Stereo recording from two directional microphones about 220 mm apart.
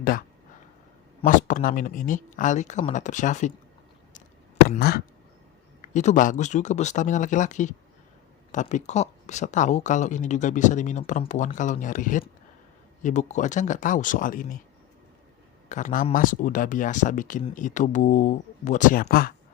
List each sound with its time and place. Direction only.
0.0 s speech: 40° left (ahead or behind)
4.8 s speech: 45° left (ahead or behind)
5.9 s speech: 35° left (ahead or behind)
15.7 s speech: 35° left (ahead or behind)